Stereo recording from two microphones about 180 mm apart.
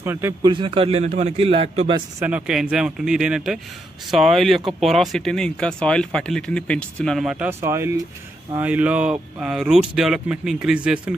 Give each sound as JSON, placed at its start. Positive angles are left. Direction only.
{"t": 0.0, "sound": "a man's voice", "side_deg": -15}
{"t": 0.5, "sound": "a man's voice", "side_deg": -30}
{"t": 2.2, "sound": "speech", "side_deg": -5}